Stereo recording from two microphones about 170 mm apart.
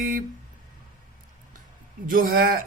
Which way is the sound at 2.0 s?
55° right (ahead or behind).